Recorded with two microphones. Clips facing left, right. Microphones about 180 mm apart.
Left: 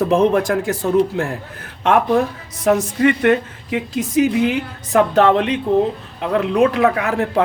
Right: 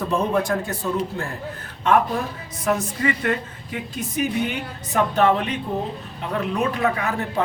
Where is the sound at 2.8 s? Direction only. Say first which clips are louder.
Left 8 dB; 75° left (ahead or behind).